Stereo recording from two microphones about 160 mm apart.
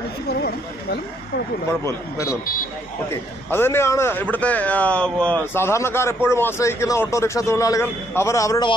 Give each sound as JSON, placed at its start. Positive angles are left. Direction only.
{"t": 3.4, "sound": "speech", "side_deg": 15}